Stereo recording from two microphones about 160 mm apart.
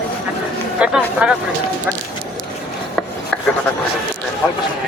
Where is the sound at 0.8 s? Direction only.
5° right (ahead or behind).